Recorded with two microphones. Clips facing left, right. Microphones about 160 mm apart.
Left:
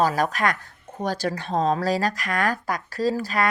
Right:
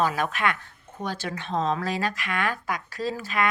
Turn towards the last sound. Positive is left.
turn(degrees=35)  # may be behind; listen again after turning